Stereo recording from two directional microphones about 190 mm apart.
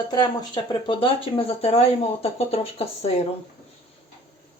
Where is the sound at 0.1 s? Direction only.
20° left (ahead or behind).